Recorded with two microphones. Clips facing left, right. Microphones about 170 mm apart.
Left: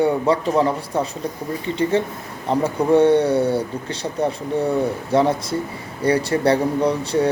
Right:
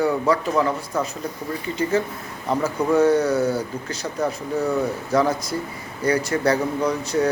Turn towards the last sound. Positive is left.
turn(degrees=30)  # may be behind; listen again after turning